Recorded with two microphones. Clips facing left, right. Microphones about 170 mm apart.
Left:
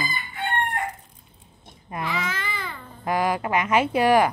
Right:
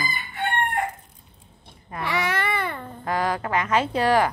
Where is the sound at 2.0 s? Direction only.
70° right (ahead or behind).